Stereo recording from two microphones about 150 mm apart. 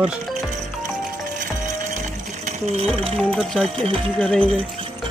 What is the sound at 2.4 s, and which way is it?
Sewing machine, 45° right (ahead or behind).